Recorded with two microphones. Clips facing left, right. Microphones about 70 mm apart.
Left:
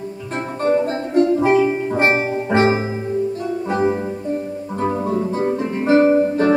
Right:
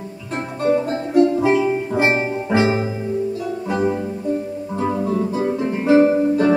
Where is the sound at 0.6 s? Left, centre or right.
Left.